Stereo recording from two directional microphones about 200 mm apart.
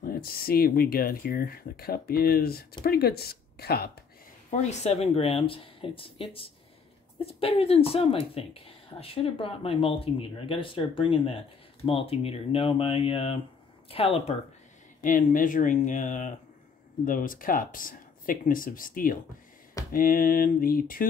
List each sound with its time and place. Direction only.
0.0 s speech: 50° left (ahead or behind)
4.5 s speech: 35° left (ahead or behind)
15.0 s speech: 45° left (ahead or behind)